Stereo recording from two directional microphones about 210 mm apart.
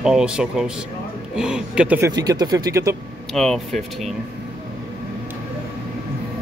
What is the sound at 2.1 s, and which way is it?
Speech, 20° right (ahead or behind).